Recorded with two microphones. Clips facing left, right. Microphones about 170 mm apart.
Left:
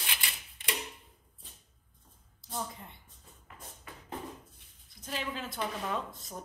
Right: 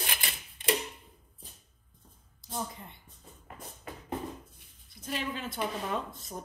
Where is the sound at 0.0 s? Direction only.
45° right (ahead or behind).